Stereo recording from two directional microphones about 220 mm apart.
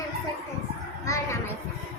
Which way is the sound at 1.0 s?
15° left (ahead or behind).